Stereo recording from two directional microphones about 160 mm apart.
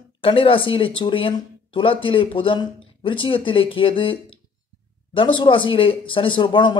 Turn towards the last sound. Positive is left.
turn(degrees=30)  # may be behind; listen again after turning